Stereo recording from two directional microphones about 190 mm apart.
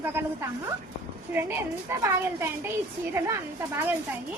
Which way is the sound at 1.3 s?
10° right (ahead or behind).